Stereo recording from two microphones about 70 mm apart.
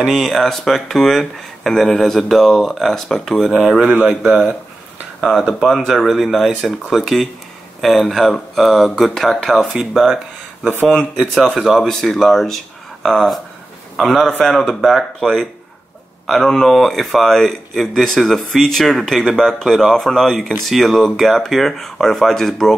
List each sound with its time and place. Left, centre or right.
0.0 s speech: centre
3.8 s speech: centre
5.7 s speech: centre
11.5 s speech: centre
11.8 s speech: centre